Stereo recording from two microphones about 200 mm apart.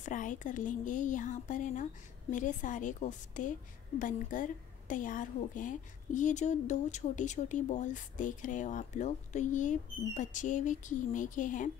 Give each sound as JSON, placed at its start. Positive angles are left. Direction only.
{"t": 0.0, "sound": "a woman's voice", "side_deg": 40}